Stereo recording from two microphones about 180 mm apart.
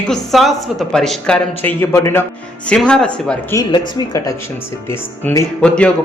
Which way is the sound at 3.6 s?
20° left (ahead or behind).